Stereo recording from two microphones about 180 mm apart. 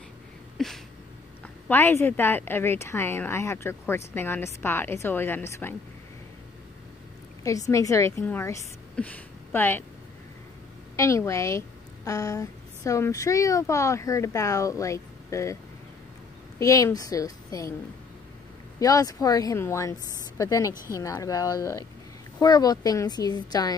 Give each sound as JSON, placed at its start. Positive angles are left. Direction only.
{"t": 0.6, "sound": "a sound", "side_deg": 0}
{"t": 1.4, "sound": "a woman's voice", "side_deg": 10}
{"t": 7.4, "sound": "a woman's voice", "side_deg": 20}
{"t": 11.0, "sound": "a woman's voice", "side_deg": 15}
{"t": 16.5, "sound": "speech", "side_deg": 20}
{"t": 18.8, "sound": "speech", "side_deg": 20}